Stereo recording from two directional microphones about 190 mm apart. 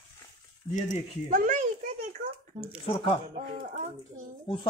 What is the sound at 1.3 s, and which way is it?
Speech, 45° right (ahead or behind).